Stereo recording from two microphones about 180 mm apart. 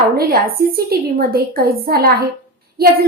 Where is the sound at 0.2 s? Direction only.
55° right (ahead or behind).